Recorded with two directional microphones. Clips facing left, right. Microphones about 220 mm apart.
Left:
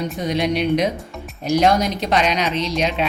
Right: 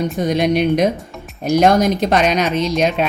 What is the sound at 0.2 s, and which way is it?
Speech, 50° right (ahead or behind).